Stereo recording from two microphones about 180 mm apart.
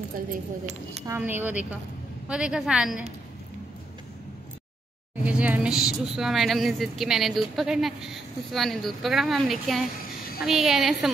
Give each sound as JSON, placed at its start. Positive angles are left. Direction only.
{"t": 0.3, "sound": "speech", "side_deg": -40}
{"t": 1.0, "sound": "speech", "side_deg": -10}
{"t": 5.1, "sound": "speech", "side_deg": -10}